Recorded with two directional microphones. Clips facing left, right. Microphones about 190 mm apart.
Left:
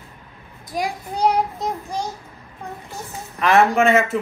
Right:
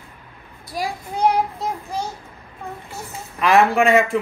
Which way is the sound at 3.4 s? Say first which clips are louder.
Even; centre (ahead or behind).